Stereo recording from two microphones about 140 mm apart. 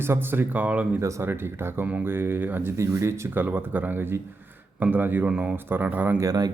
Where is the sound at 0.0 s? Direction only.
15° right (ahead or behind).